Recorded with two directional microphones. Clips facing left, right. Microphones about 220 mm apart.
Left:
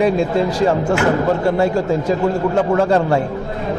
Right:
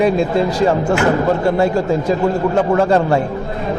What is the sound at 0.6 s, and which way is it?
Speech, 20° right (ahead or behind).